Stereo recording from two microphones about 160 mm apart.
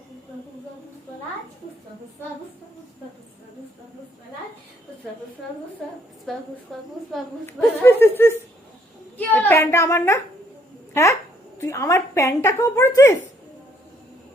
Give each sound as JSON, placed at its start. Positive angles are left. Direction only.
{"t": 6.3, "sound": "a woman's voice", "side_deg": 0}
{"t": 7.4, "sound": "a child's voice", "side_deg": 15}